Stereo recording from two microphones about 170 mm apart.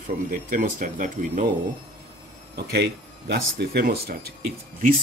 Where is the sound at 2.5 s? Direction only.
70° right (ahead or behind).